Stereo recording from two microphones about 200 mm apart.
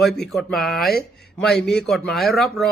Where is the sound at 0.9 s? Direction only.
50° left (ahead or behind).